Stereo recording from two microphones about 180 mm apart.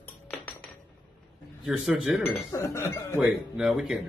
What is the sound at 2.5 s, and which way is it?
Speech, 15° left (ahead or behind).